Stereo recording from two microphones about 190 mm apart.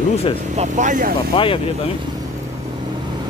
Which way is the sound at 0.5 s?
40° right (ahead or behind).